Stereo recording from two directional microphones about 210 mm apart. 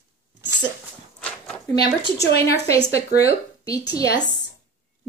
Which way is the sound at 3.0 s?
15° left (ahead or behind).